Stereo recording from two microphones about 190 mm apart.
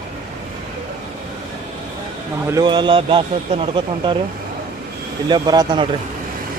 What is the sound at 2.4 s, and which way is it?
Speech, 20° right (ahead or behind).